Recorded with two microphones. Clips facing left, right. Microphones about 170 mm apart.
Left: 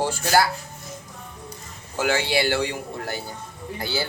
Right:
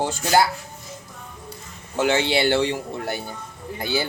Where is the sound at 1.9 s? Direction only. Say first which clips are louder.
Right 2 dB; 20° right (ahead or behind).